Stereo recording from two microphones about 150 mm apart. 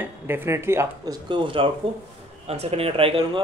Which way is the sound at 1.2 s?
35° right (ahead or behind).